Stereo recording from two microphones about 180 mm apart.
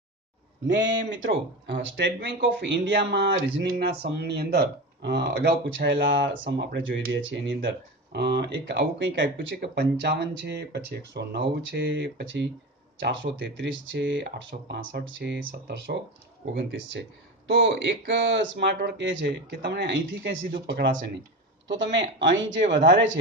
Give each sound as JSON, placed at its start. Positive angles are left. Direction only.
{"t": 0.7, "sound": "speech", "side_deg": -90}
{"t": 3.6, "sound": "speech", "side_deg": -65}
{"t": 13.0, "sound": "speech", "side_deg": -85}
{"t": 15.0, "sound": "speech", "side_deg": -80}
{"t": 17.5, "sound": "speech", "side_deg": -75}
{"t": 21.6, "sound": "a man's voice", "side_deg": -90}